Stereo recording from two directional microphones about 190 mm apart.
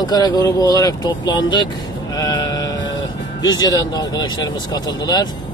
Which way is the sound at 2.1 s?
20° left (ahead or behind).